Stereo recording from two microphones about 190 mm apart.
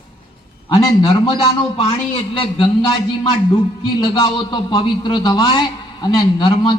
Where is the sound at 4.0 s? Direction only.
25° left (ahead or behind).